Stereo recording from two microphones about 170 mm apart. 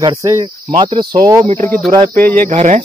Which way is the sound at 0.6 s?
30° right (ahead or behind).